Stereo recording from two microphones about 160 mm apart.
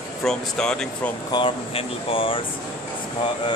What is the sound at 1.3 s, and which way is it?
Speech, 35° left (ahead or behind).